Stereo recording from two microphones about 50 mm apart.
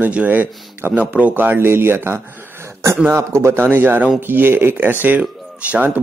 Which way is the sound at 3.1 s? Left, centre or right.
Right.